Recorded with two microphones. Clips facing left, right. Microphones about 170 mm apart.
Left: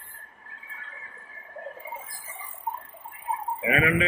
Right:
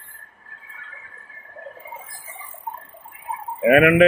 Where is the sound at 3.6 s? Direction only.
65° right (ahead or behind).